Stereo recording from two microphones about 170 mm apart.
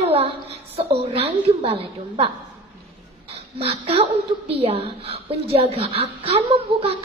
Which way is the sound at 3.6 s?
35° right (ahead or behind).